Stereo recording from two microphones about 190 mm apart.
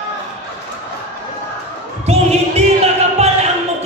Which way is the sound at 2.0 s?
35° right (ahead or behind).